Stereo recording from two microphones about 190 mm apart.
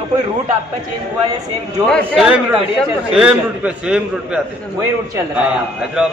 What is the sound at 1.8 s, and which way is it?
A man's voice, centre (ahead or behind).